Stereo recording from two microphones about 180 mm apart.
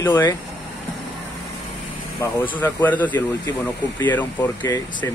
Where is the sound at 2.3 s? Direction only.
10° left (ahead or behind).